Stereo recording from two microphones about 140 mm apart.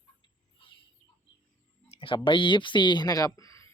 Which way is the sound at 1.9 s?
40° left (ahead or behind).